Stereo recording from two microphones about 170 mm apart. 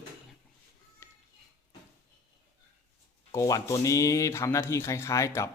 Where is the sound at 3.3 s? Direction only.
20° left (ahead or behind).